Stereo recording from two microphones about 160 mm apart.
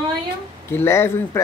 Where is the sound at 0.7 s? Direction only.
15° left (ahead or behind).